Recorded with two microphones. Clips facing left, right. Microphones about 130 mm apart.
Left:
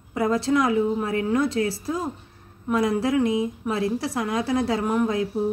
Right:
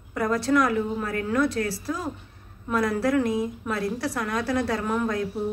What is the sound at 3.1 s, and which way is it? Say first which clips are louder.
Speech: left 2 dB; centre (ahead or behind).